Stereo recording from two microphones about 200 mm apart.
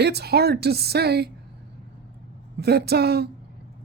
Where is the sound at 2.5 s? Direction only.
55° right (ahead or behind).